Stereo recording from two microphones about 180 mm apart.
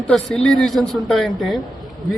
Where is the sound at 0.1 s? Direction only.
Centre (ahead or behind).